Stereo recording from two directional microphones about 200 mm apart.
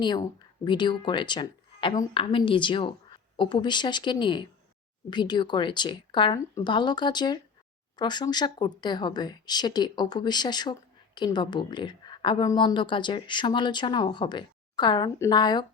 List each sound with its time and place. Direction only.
0.0 s speech: 20° left (ahead or behind)